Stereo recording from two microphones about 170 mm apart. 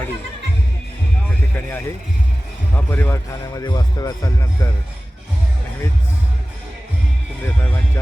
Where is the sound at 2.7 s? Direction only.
10° left (ahead or behind).